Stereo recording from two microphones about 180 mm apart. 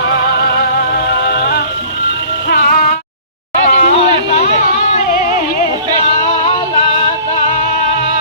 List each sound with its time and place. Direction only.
2.5 s music: 55° left (ahead or behind)
3.7 s a sound: 45° left (ahead or behind)
6.1 s music: 35° left (ahead or behind)